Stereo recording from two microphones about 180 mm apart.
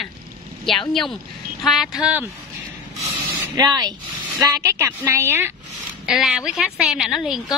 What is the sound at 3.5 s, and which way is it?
A woman's voice, 20° right (ahead or behind).